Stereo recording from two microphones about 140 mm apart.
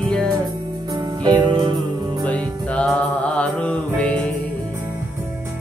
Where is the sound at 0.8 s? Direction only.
30° right (ahead or behind).